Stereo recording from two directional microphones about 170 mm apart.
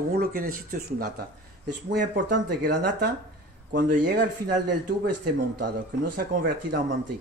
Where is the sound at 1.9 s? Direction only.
80° right.